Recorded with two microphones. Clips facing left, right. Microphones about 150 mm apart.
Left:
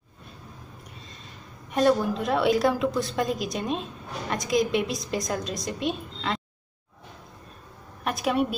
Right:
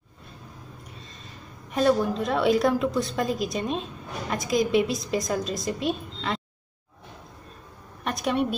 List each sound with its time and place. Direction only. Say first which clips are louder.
1.7 s a woman's voice: even; centre (ahead or behind)
8.0 s a woman's voice: left 1 dB; centre (ahead or behind)